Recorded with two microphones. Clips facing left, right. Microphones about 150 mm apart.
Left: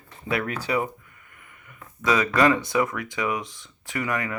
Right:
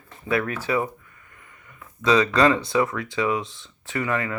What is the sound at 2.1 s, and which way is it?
Speech, 20° right (ahead or behind).